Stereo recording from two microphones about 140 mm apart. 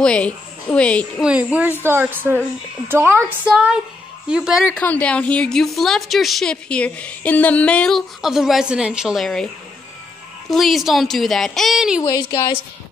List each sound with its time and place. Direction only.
0.0 s a woman's voice: 10° left (ahead or behind)
1.2 s a woman's voice: 10° right (ahead or behind)
4.6 s a woman's voice: 10° left (ahead or behind)
10.5 s a woman's voice: centre (ahead or behind)
12.0 s a sound: 30° left (ahead or behind)